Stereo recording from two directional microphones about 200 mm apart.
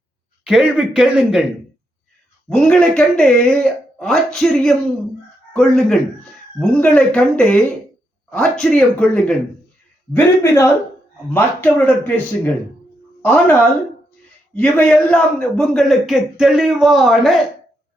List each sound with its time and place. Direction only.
0.4 s a man's voice: 5° right (ahead or behind)
2.5 s a man's voice: 5° left (ahead or behind)